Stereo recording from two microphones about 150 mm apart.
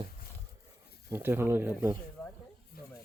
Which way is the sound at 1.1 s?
15° right (ahead or behind).